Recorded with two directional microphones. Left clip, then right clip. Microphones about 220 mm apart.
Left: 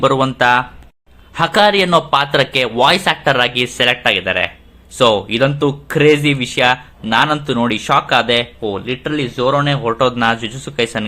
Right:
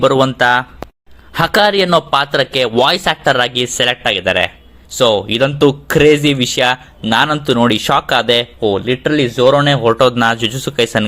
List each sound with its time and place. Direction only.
0.0 s speech: 30° right (ahead or behind)